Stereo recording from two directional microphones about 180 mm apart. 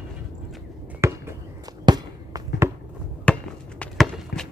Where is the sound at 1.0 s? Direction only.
15° right (ahead or behind).